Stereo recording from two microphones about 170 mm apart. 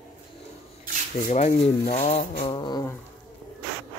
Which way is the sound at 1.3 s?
45° left (ahead or behind).